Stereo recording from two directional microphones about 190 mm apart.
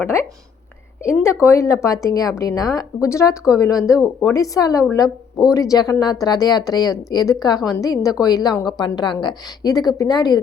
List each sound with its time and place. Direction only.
0.0 s a woman's voice: 15° left (ahead or behind)